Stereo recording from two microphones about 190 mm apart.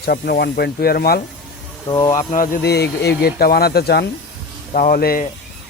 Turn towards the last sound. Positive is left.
turn(degrees=50)  # may be behind; listen again after turning